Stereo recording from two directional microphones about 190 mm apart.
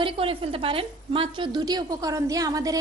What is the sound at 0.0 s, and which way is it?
A woman's voice, 30° right (ahead or behind).